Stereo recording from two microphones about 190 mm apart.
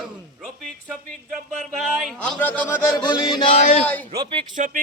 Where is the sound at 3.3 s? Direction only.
25° left (ahead or behind).